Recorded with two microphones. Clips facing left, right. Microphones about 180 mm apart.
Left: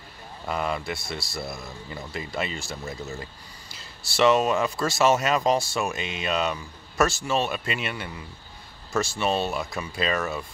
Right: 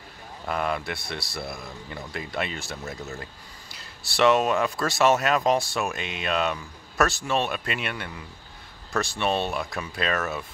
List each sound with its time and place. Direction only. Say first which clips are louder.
0.5 s speech: even; centre (ahead or behind)